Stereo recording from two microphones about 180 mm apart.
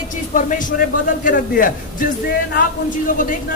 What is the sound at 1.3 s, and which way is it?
A man's voice, 50° left (ahead or behind).